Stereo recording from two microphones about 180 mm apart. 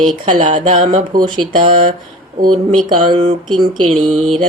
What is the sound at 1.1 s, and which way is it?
Speech, 55° right (ahead or behind).